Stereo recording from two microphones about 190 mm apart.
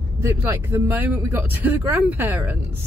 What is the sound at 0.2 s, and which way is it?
Speech, 15° right (ahead or behind).